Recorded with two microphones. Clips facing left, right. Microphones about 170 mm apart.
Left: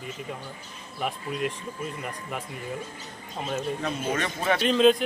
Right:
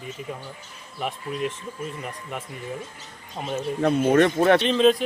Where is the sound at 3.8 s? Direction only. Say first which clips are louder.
Right 10 dB; 55° right (ahead or behind).